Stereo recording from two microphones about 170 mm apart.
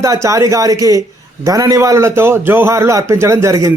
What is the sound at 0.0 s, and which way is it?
A man's voice, 20° right (ahead or behind).